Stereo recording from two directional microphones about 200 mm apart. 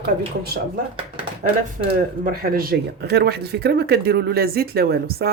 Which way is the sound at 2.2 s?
45° right (ahead or behind).